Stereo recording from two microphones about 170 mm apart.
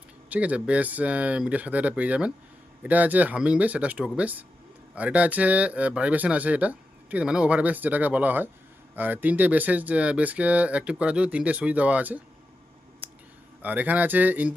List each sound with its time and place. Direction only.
0.3 s speech: 10° right (ahead or behind)
13.6 s speech: 10° right (ahead or behind)